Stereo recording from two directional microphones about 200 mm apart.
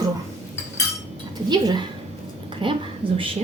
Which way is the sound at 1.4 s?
20° right (ahead or behind).